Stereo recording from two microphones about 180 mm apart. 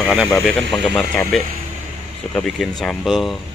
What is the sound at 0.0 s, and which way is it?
Speech, 5° right (ahead or behind).